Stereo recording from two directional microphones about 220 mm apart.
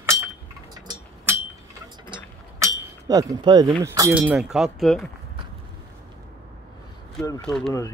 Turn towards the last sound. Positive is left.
turn(degrees=5)  # may be behind; listen again after turning